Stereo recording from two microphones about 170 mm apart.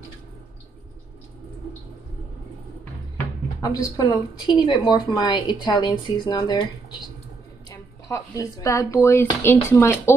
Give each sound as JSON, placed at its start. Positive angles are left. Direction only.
{"t": 3.6, "sound": "speech", "side_deg": 20}
{"t": 7.7, "sound": "speech", "side_deg": 20}